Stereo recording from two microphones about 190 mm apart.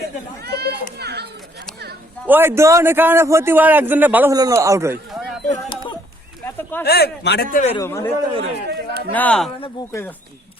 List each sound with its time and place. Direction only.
0.0 s a sound: 60° right (ahead or behind)
0.9 s children playing: 60° right (ahead or behind)
2.2 s a man's voice: 10° right (ahead or behind)
6.4 s a sound: 10° left (ahead or behind)
6.8 s a man's voice: 55° left (ahead or behind)
7.5 s a man's voice: 35° left (ahead or behind)
7.8 s speech: 15° left (ahead or behind)
8.7 s a sound: 60° right (ahead or behind)
9.1 s speech: 5° left (ahead or behind)